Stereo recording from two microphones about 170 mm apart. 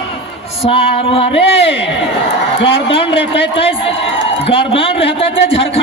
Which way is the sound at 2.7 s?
30° left (ahead or behind).